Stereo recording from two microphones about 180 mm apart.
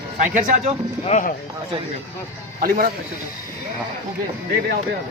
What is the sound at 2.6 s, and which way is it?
Speech, 55° right (ahead or behind).